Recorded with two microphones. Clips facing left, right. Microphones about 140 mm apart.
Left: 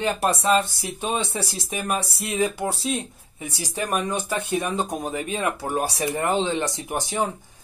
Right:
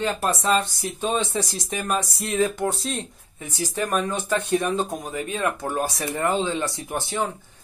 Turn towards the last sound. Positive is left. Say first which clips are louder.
# left 1 dB
turn(degrees=15)  # may be behind; listen again after turning